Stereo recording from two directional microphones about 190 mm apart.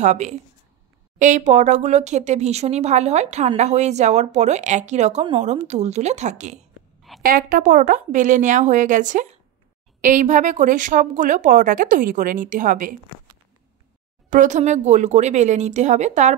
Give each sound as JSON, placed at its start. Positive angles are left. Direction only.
{"t": 0.0, "sound": "speech", "side_deg": -40}
{"t": 7.0, "sound": "a sound", "side_deg": 0}
{"t": 7.2, "sound": "a woman's voice", "side_deg": -45}
{"t": 14.3, "sound": "speech", "side_deg": -40}